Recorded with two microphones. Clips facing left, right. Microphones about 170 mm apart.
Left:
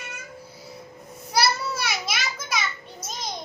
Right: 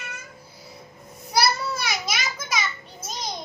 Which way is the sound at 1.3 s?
Centre (ahead or behind).